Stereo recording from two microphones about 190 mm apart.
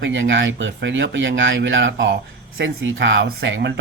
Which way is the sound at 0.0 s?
75° right (ahead or behind).